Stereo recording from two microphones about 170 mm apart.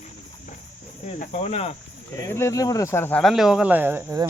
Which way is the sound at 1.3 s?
40° left (ahead or behind).